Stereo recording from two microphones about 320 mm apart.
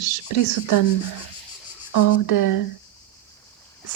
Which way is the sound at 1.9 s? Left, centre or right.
Left.